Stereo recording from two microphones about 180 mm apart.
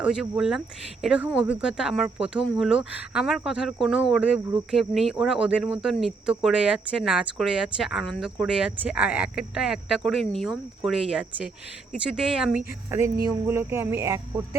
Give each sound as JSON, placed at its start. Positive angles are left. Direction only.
{"t": 0.0, "sound": "speech", "side_deg": -5}
{"t": 13.2, "sound": "speech", "side_deg": -15}